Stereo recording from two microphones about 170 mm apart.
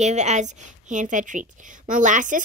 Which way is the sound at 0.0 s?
40° right (ahead or behind).